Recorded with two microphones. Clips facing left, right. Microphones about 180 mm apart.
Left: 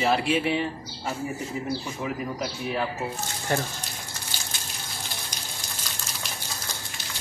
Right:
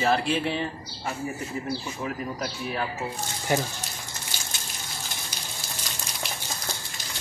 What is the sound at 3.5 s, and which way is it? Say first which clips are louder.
Speech: right 2 dB; 10° right (ahead or behind).